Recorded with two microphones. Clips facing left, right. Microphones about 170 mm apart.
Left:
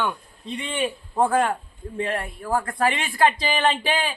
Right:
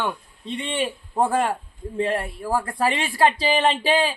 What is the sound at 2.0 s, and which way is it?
A man's voice, 30° right (ahead or behind).